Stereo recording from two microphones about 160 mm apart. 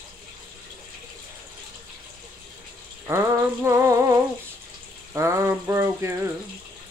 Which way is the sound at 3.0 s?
15° right (ahead or behind).